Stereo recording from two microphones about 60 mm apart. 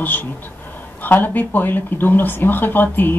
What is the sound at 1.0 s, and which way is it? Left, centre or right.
Speech, left.